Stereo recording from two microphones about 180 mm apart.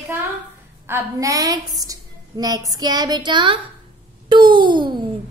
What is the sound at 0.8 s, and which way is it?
A woman's voice, 15° right (ahead or behind).